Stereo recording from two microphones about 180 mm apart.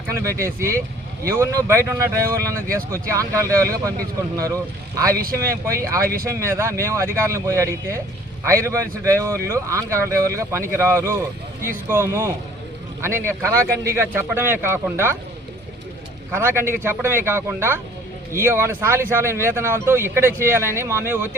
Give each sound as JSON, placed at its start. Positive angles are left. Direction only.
{"t": 0.1, "sound": "speech", "side_deg": -15}
{"t": 5.1, "sound": "speech", "side_deg": -55}
{"t": 5.4, "sound": "speech", "side_deg": -15}
{"t": 16.3, "sound": "speech", "side_deg": -15}